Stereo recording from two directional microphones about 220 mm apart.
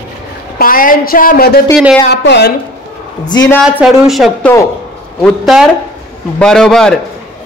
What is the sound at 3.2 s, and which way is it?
Speech, 20° left (ahead or behind).